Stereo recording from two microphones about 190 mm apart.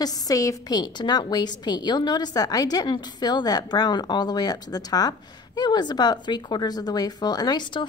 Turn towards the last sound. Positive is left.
turn(degrees=25)  # may be behind; listen again after turning